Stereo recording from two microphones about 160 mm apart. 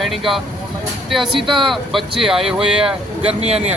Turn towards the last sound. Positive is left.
turn(degrees=-40)  # may be behind; listen again after turning